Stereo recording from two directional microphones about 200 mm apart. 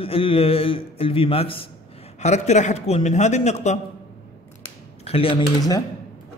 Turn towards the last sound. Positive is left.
turn(degrees=20)  # may be behind; listen again after turning